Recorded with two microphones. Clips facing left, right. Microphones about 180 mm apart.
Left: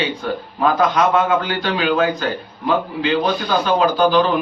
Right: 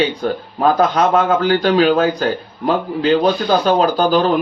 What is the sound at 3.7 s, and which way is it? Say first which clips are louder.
Speech: right 1 dB; 40° right (ahead or behind).